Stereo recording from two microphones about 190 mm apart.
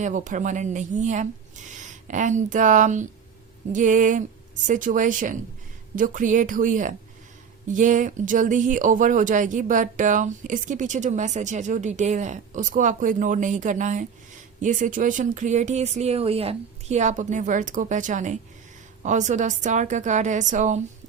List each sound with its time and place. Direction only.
0.0 s speech: 40° right (ahead or behind)